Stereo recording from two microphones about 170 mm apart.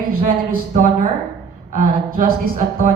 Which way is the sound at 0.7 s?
50° right (ahead or behind).